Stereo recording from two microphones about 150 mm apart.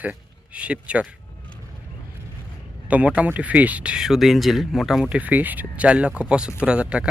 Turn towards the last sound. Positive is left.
turn(degrees=-5)  # may be behind; listen again after turning